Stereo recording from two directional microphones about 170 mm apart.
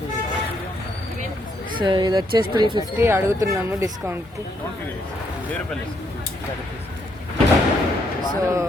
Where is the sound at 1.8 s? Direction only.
25° right (ahead or behind).